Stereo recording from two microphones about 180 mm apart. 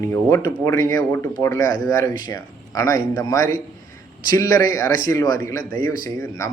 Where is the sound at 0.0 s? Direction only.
15° left (ahead or behind).